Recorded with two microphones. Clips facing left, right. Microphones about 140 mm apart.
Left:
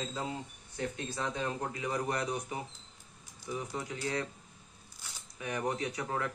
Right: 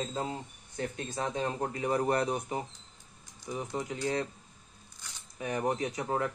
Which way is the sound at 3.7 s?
25° right (ahead or behind).